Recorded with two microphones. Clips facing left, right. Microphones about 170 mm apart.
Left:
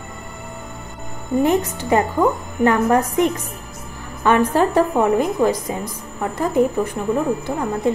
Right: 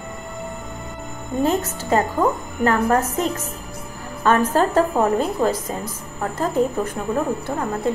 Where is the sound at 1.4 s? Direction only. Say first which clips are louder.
Left 2 dB; 15° left (ahead or behind).